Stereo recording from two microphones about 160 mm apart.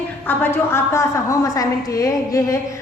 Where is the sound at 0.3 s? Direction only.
15° left (ahead or behind).